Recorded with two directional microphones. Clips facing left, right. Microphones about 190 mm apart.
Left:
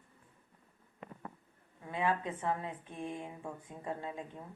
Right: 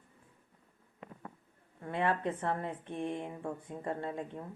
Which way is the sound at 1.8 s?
60° right (ahead or behind).